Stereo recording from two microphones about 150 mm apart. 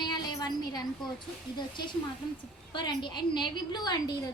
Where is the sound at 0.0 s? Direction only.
30° left (ahead or behind).